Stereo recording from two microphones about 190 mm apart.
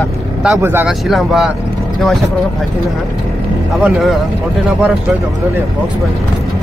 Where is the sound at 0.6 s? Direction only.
10° right (ahead or behind).